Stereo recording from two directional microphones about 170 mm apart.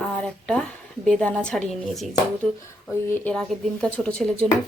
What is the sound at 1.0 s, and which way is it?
Speech, 5° left (ahead or behind).